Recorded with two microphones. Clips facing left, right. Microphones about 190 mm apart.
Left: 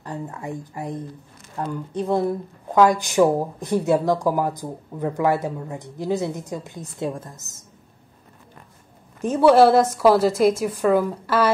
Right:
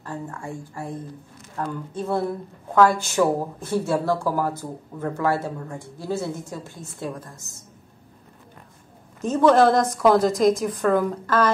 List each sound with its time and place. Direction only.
0.0 s a woman's voice: 20° left (ahead or behind)
9.2 s a woman's voice: 10° left (ahead or behind)